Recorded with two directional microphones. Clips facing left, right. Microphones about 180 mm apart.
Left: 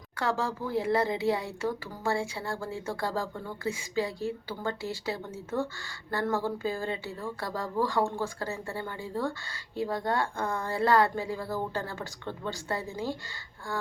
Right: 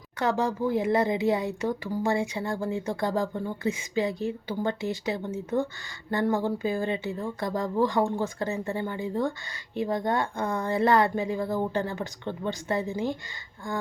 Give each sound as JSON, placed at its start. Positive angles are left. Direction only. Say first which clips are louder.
{"t": 0.2, "sound": "speech", "louder": "right 5 dB", "side_deg": -20}